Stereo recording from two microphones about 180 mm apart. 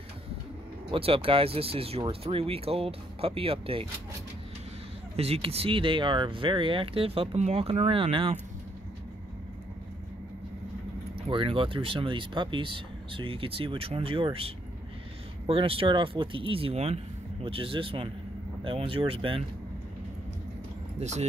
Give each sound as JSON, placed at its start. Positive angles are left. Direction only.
{"t": 0.9, "sound": "speech", "side_deg": -30}
{"t": 5.1, "sound": "speech", "side_deg": -35}
{"t": 11.1, "sound": "speech", "side_deg": -30}
{"t": 21.0, "sound": "speech", "side_deg": -40}